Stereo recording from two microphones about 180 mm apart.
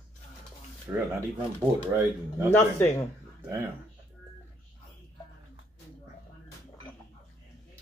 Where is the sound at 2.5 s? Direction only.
10° left (ahead or behind).